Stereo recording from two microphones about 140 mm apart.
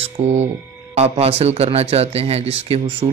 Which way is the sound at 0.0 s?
55° right (ahead or behind).